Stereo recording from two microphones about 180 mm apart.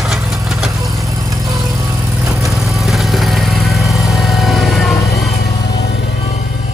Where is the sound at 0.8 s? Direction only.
15° right (ahead or behind).